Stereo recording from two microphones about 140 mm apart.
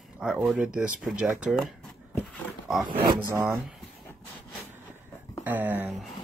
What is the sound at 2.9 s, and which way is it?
Speech, 90° right.